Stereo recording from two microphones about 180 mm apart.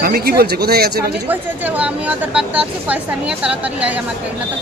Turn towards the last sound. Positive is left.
turn(degrees=-5)  # may be behind; listen again after turning